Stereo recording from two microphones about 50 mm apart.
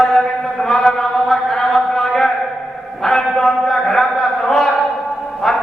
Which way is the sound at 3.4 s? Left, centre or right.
Centre.